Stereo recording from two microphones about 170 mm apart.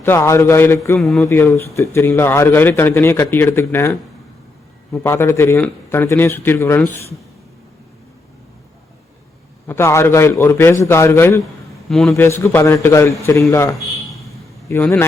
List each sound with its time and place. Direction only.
0.0 s a man's voice: 15° left (ahead or behind)
9.6 s a man's voice: 15° left (ahead or behind)
11.9 s a man's voice: 5° left (ahead or behind)